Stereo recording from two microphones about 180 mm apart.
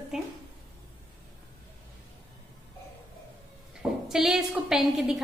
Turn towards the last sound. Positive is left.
turn(degrees=-5)  # may be behind; listen again after turning